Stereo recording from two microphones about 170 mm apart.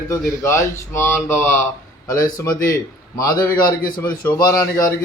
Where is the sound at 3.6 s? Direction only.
55° left (ahead or behind).